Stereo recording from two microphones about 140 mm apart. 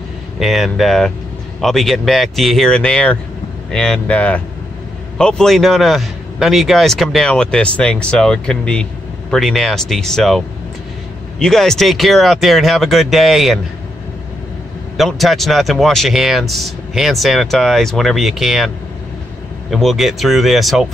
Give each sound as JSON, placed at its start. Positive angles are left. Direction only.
{"t": 0.4, "sound": "a man's voice", "side_deg": 0}
{"t": 15.0, "sound": "a man's voice", "side_deg": 0}
{"t": 19.7, "sound": "a man's voice", "side_deg": 0}